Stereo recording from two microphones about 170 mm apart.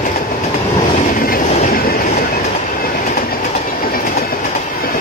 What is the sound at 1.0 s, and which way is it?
Train, 55° left (ahead or behind).